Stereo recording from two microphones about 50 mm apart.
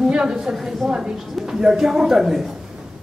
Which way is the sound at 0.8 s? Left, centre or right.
Centre.